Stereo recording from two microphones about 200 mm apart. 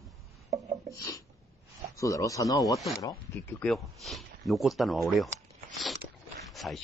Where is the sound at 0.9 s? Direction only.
15° left (ahead or behind).